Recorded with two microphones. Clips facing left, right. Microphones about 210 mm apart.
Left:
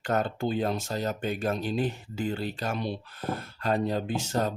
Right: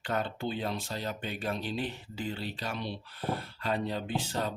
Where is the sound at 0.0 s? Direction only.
45° left (ahead or behind).